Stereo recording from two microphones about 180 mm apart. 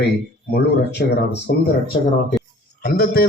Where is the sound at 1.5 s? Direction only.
55° left (ahead or behind).